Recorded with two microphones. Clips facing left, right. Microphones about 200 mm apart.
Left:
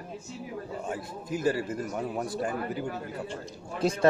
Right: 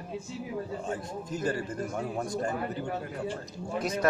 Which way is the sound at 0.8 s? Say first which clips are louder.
Even; 10° left (ahead or behind).